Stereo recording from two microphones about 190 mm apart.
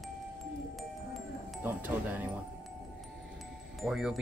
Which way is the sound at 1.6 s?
10° right (ahead or behind).